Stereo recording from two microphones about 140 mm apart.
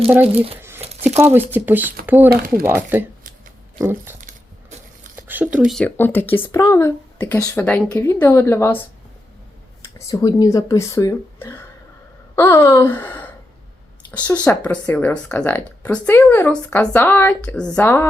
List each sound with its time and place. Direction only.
0.1 s speech: 10° right (ahead or behind)
5.1 s a sound: 15° right (ahead or behind)
5.7 s speech: 10° left (ahead or behind)
10.0 s speech: 25° left (ahead or behind)